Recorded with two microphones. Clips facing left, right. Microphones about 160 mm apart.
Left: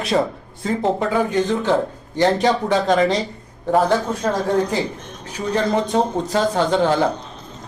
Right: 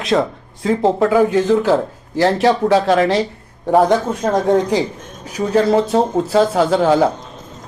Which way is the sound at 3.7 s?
20° right (ahead or behind).